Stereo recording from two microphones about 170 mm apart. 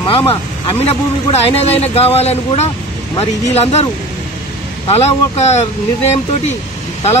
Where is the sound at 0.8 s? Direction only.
35° left (ahead or behind).